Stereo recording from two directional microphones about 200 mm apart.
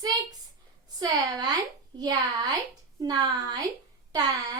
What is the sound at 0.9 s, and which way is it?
A woman's voice, 20° right (ahead or behind).